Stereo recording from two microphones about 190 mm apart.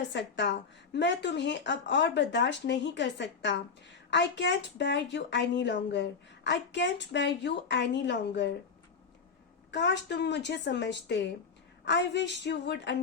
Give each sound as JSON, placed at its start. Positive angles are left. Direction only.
{"t": 0.1, "sound": "speech", "side_deg": 65}
{"t": 9.7, "sound": "speech", "side_deg": 65}